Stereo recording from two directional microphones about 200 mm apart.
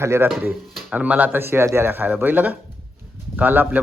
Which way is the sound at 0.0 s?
10° right (ahead or behind).